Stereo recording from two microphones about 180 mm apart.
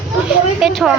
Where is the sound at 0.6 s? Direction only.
5° right (ahead or behind).